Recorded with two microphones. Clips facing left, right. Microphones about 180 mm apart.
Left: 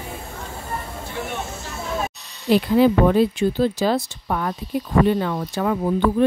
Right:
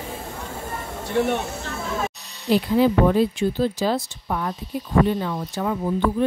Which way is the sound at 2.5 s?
70° left (ahead or behind).